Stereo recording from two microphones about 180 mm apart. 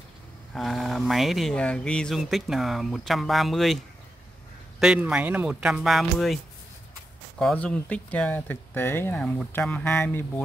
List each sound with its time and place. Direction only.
0.6 s speech: centre (ahead or behind)